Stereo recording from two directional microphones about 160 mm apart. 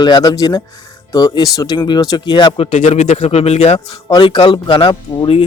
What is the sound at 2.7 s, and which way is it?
Speech, 50° left (ahead or behind).